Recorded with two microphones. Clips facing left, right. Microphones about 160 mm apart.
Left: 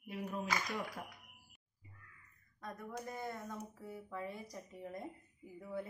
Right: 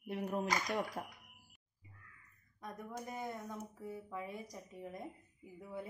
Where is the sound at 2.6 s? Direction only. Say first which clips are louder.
Even; 15° right (ahead or behind).